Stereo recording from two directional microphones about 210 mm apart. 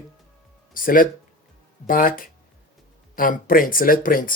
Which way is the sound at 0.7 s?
40° left (ahead or behind).